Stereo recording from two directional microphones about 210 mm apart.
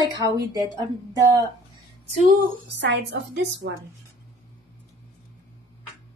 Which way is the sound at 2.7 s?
55° right (ahead or behind).